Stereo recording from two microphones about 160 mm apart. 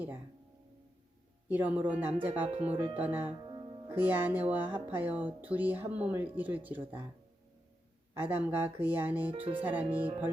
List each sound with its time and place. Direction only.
1.5 s speech: 10° right (ahead or behind)
2.5 s speech: 40° right (ahead or behind)
2.9 s speech: 10° right (ahead or behind)
3.4 s music: 30° right (ahead or behind)
3.8 s speech: 15° right (ahead or behind)
8.1 s speech: 15° right (ahead or behind)
9.3 s speech: 35° right (ahead or behind)
9.6 s speech: 10° right (ahead or behind)